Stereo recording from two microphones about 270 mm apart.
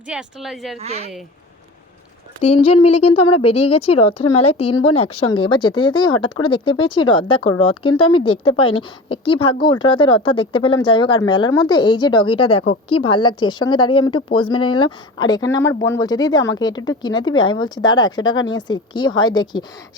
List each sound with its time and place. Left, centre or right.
0.1 s a woman's voice: centre
0.8 s speech: right
2.5 s speech: left
2.8 s speech: left
4.7 s speech: left
5.4 s speech: centre